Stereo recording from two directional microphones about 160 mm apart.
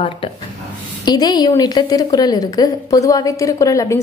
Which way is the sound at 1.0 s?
25° left (ahead or behind).